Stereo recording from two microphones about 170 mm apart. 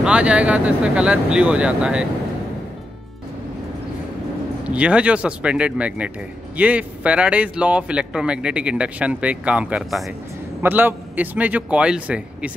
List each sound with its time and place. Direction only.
0.0 s speech: 5° right (ahead or behind)
4.6 s speech: 5° right (ahead or behind)